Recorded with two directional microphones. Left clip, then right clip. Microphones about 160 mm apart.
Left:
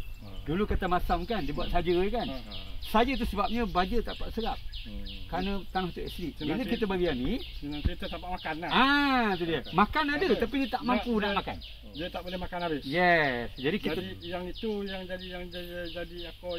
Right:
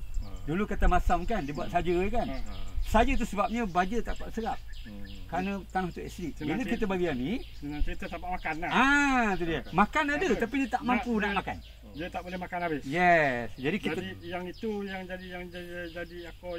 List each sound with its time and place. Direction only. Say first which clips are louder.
0.5 s speech: even; 30° right (ahead or behind)
13.8 s speech: even; 25° right (ahead or behind)